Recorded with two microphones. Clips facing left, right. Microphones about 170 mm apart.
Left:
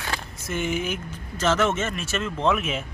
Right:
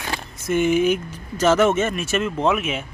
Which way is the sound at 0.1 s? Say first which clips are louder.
Right 8 dB; 15° right (ahead or behind).